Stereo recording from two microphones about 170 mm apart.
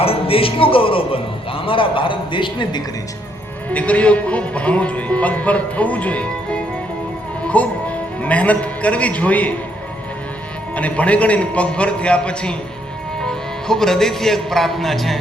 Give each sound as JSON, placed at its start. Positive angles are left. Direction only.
{"t": 0.0, "sound": "a man's voice", "side_deg": 35}
{"t": 3.7, "sound": "a man's voice", "side_deg": 10}
{"t": 10.8, "sound": "speech", "side_deg": 10}